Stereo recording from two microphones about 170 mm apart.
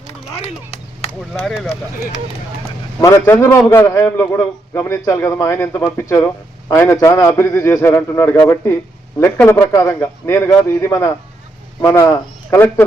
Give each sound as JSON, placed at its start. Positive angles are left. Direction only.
{"t": 0.3, "sound": "a sound", "side_deg": 40}
{"t": 1.3, "sound": "speech", "side_deg": 0}
{"t": 3.0, "sound": "a man's voice", "side_deg": 20}